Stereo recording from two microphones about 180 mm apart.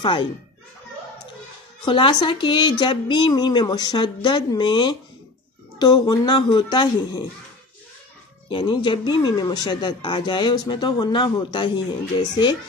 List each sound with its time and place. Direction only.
0.0 s speech: 25° left (ahead or behind)
1.9 s speech: 30° left (ahead or behind)
8.5 s speech: 30° left (ahead or behind)